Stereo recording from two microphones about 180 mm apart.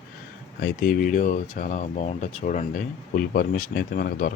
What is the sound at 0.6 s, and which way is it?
Speech, 50° left (ahead or behind).